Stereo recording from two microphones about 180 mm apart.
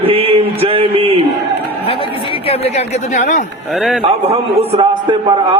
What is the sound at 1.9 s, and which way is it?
Speech, 30° left (ahead or behind).